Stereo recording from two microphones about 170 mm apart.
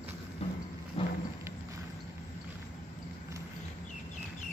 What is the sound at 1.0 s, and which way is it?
Thunder, 35° left (ahead or behind).